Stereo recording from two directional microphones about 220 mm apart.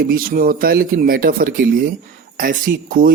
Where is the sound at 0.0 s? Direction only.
40° right (ahead or behind).